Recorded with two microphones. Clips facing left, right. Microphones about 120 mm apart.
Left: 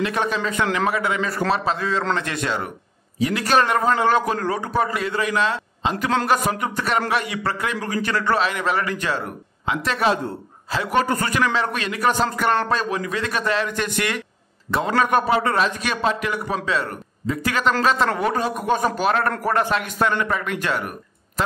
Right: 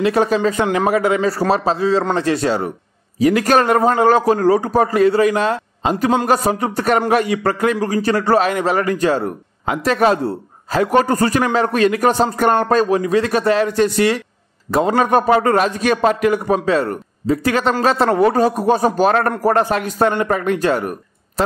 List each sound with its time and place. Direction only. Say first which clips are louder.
0.0 s a man's voice: right 8 dB; 40° right (ahead or behind)